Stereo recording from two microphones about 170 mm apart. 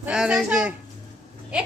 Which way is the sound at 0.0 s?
5° right (ahead or behind).